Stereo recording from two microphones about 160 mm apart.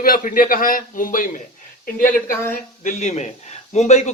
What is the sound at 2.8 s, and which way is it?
A man's voice, 50° left (ahead or behind).